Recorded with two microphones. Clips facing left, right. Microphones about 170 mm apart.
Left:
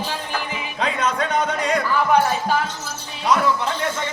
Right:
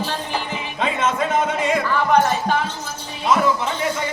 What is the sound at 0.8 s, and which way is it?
Speech, centre (ahead or behind).